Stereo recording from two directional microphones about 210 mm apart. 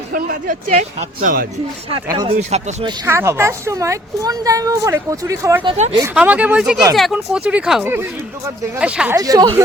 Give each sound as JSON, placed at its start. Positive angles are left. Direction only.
{"t": 0.1, "sound": "speech", "side_deg": -40}
{"t": 1.9, "sound": "speech", "side_deg": -25}
{"t": 2.8, "sound": "a woman's voice", "side_deg": -10}
{"t": 5.7, "sound": "speech", "side_deg": -35}
{"t": 6.0, "sound": "a woman's voice", "side_deg": -5}
{"t": 9.1, "sound": "a woman's voice", "side_deg": -15}